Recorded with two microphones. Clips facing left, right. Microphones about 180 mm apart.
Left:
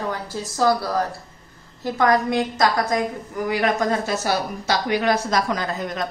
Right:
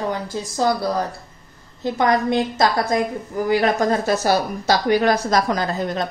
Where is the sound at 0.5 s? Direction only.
20° right (ahead or behind).